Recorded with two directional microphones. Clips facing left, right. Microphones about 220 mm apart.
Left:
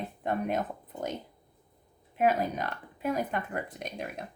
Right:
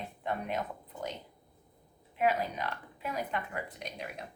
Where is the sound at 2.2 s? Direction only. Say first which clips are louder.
Left 3 dB; 45° left (ahead or behind).